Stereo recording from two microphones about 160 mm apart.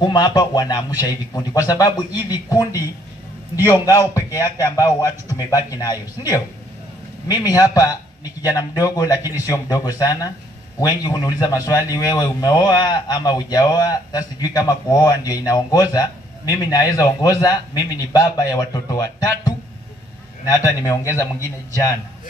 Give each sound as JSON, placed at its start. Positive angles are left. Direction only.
{"t": 0.0, "sound": "speech", "side_deg": 25}
{"t": 3.8, "sound": "speech", "side_deg": 20}